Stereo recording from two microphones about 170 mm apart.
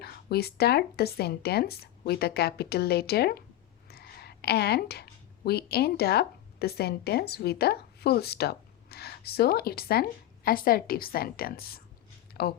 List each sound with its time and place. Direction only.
0.0 s speech: 70° left (ahead or behind)
3.8 s a sound: 65° left (ahead or behind)
5.5 s speech: 70° left (ahead or behind)